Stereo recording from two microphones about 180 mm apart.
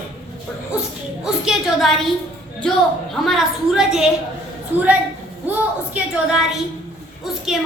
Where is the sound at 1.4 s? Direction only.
Centre (ahead or behind).